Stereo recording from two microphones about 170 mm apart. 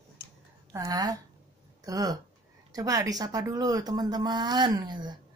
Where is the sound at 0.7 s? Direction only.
20° right (ahead or behind).